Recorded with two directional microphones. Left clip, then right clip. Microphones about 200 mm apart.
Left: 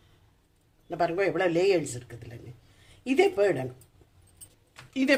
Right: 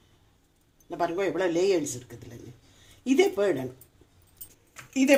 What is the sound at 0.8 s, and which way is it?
Speech, 15° left (ahead or behind).